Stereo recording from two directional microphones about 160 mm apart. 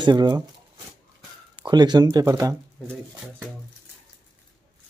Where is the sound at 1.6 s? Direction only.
25° right (ahead or behind).